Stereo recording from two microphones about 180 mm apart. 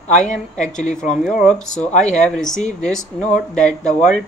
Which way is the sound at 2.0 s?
40° left (ahead or behind).